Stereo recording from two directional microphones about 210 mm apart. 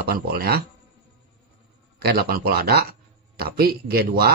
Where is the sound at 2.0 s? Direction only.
50° right (ahead or behind).